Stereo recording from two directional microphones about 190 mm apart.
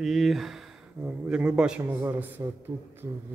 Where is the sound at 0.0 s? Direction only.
Centre (ahead or behind).